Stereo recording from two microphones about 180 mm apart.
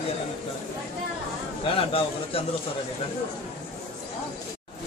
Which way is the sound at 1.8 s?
30° left (ahead or behind).